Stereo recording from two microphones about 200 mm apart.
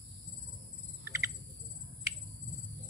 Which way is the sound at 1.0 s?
15° right (ahead or behind).